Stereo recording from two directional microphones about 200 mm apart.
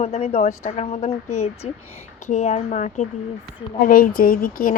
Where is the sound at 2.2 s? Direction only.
35° left (ahead or behind).